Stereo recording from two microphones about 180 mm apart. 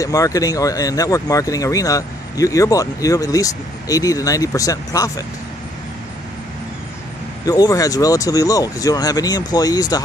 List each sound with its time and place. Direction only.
0.0 s speech: 20° left (ahead or behind)
7.4 s speech: 20° left (ahead or behind)